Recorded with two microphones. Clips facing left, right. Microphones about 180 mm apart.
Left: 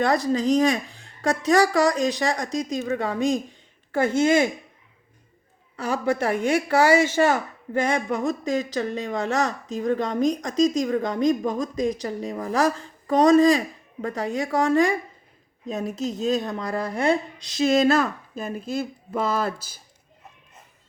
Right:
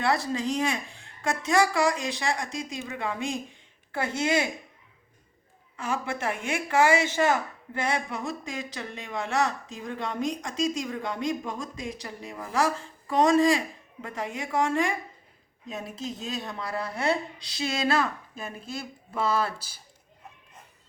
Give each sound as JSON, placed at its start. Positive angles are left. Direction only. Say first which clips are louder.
{"t": 0.0, "sound": "speech", "louder": "left 5 dB", "side_deg": 40}
{"t": 5.7, "sound": "speech", "louder": "left 7 dB", "side_deg": 40}